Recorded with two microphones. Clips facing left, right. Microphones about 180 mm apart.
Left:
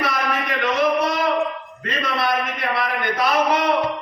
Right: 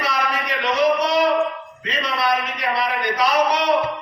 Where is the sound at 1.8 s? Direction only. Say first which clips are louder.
Even; 50° left (ahead or behind).